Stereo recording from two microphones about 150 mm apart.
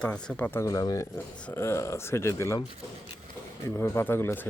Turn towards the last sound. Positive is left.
turn(degrees=15)  # may be behind; listen again after turning